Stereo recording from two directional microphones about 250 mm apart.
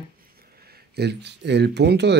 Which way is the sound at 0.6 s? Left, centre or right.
Right.